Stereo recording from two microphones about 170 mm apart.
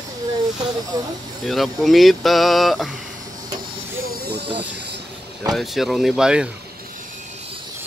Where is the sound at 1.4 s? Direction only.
Centre (ahead or behind).